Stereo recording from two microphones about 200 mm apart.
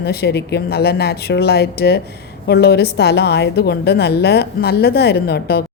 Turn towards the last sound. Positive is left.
turn(degrees=55)  # may be behind; listen again after turning